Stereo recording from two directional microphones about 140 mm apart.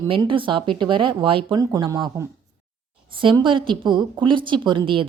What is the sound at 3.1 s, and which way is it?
A woman's voice, 35° right (ahead or behind).